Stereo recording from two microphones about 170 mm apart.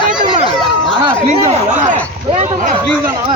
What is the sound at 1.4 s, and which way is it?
Speech, 45° right (ahead or behind).